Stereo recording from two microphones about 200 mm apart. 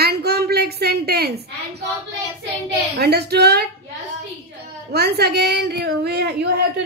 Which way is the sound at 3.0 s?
55° right (ahead or behind).